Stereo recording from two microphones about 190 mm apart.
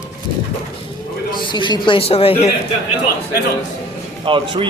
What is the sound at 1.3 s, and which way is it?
Speech, 25° left (ahead or behind).